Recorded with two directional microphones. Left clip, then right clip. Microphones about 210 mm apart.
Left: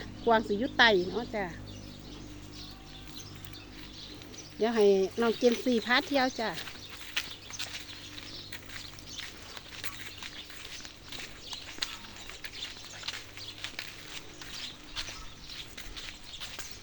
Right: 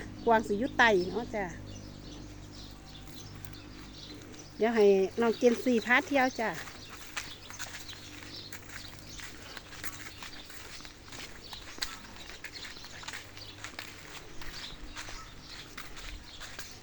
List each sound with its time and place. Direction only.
0.0 s speech: centre (ahead or behind)
4.6 s speech: 5° right (ahead or behind)
7.1 s a sound: 5° right (ahead or behind)
11.8 s clip-clop: 30° right (ahead or behind)